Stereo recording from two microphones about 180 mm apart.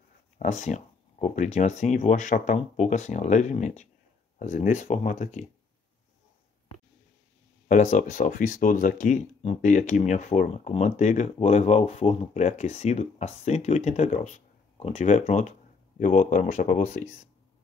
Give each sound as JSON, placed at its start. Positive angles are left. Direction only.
{"t": 0.4, "sound": "speech", "side_deg": 40}
{"t": 7.6, "sound": "speech", "side_deg": 45}